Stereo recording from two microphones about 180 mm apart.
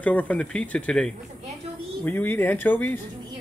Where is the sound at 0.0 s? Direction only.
10° left (ahead or behind).